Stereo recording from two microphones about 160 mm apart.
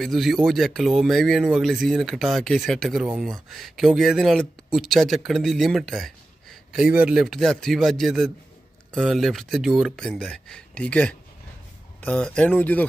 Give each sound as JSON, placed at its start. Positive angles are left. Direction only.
{"t": 0.0, "sound": "speech", "side_deg": 0}